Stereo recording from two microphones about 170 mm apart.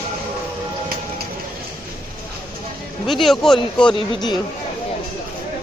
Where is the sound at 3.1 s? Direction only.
Centre (ahead or behind).